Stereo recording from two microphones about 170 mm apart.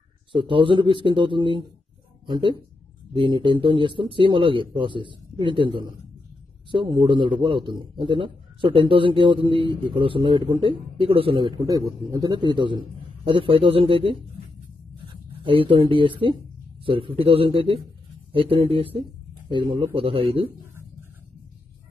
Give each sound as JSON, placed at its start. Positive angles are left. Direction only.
{"t": 0.3, "sound": "speech", "side_deg": -30}
{"t": 15.4, "sound": "speech", "side_deg": -30}